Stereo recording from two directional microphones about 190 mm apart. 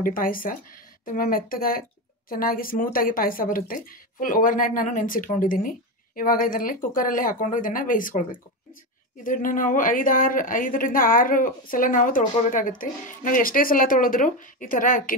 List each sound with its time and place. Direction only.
0.0 s a woman's voice: 45° left (ahead or behind)